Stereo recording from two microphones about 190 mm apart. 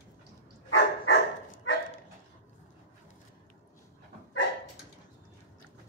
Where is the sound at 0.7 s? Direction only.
70° left (ahead or behind).